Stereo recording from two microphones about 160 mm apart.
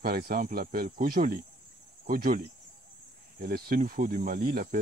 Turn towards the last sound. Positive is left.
turn(degrees=-65)  # may be behind; listen again after turning